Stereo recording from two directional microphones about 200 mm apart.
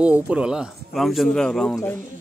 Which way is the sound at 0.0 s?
5° right (ahead or behind).